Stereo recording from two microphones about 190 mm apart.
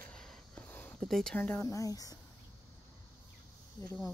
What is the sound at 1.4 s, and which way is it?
Speech, 15° left (ahead or behind).